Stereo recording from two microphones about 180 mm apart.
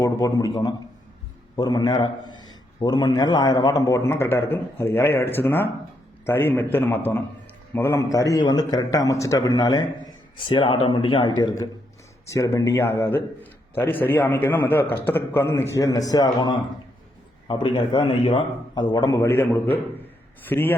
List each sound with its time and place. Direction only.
0.0 s a man's voice: 20° left (ahead or behind)